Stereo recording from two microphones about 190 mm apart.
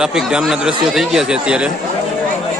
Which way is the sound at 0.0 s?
5° right (ahead or behind).